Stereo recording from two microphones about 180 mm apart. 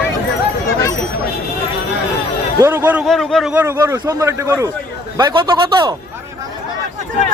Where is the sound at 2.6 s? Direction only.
10° right (ahead or behind).